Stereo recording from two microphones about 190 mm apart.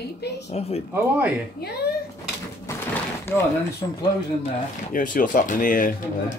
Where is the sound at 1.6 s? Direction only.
55° left (ahead or behind).